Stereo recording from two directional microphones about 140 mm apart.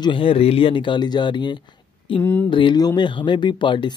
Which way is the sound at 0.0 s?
40° left (ahead or behind).